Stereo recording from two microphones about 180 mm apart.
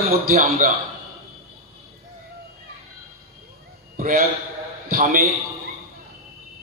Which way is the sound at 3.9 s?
55° right (ahead or behind).